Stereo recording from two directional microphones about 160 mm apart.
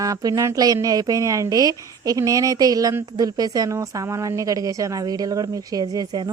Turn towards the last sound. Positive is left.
turn(degrees=-25)  # may be behind; listen again after turning